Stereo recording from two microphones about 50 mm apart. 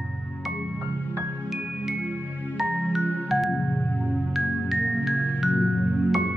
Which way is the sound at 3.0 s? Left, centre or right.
Right.